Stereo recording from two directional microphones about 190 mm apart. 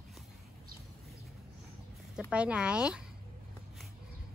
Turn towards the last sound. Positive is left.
turn(degrees=-5)  # may be behind; listen again after turning